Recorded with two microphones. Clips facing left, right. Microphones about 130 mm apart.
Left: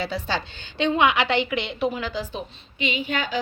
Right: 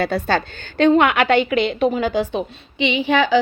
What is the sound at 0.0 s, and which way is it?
A woman's voice, 55° right (ahead or behind).